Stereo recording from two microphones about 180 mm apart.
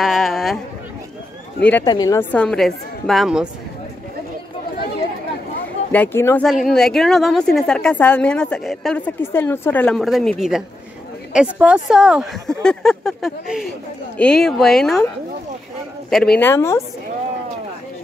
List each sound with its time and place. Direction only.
0.0 s a sound: centre (ahead or behind)
1.6 s speech: 10° left (ahead or behind)
1.9 s a woman's voice: 20° left (ahead or behind)
2.3 s a woman's voice: 5° left (ahead or behind)
5.9 s speech: 10° left (ahead or behind)
6.4 s a woman's voice: centre (ahead or behind)
16.3 s speech: 15° left (ahead or behind)